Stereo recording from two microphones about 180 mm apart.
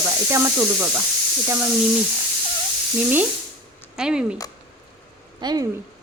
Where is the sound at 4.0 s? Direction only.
5° right (ahead or behind).